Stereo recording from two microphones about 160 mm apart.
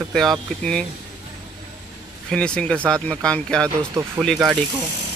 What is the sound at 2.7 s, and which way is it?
Speech, 20° right (ahead or behind).